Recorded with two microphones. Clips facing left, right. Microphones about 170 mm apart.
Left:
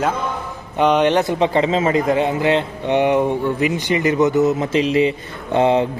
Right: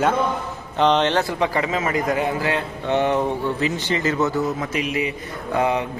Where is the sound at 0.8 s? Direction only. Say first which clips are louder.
Left 3 dB; 10° left (ahead or behind).